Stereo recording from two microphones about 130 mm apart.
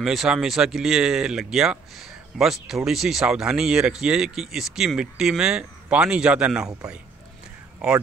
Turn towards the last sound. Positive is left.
turn(degrees=-5)  # may be behind; listen again after turning